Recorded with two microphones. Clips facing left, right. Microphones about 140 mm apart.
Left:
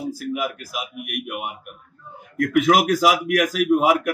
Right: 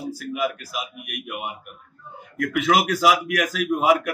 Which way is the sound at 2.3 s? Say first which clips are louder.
Left 3 dB; 40° left (ahead or behind).